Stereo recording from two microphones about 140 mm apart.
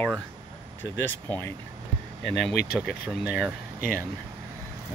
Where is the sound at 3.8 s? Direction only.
80° left.